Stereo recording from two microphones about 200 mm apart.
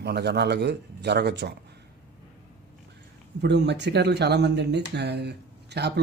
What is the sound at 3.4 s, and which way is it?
Speech, 55° right (ahead or behind).